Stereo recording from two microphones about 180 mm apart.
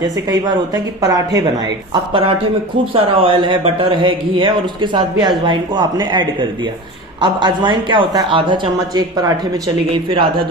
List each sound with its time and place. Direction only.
1.0 s a man's voice: 20° right (ahead or behind)
2.9 s a man's voice: 30° right (ahead or behind)